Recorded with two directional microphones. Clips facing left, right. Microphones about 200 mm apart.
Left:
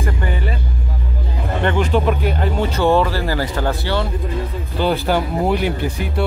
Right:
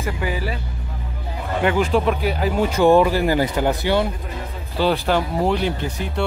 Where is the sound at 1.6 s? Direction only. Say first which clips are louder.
Even; 5° right (ahead or behind).